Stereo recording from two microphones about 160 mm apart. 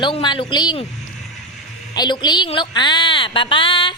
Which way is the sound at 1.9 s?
25° left (ahead or behind).